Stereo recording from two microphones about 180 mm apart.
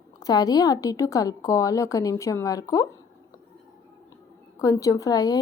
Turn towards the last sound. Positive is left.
turn(degrees=20)  # may be behind; listen again after turning